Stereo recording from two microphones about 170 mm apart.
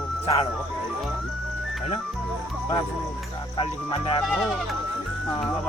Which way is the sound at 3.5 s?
30° left (ahead or behind).